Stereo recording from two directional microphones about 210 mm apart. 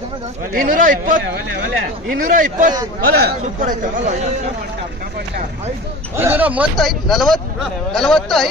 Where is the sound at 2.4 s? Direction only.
40° right (ahead or behind).